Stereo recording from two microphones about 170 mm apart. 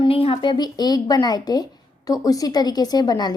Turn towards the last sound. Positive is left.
turn(degrees=25)  # may be behind; listen again after turning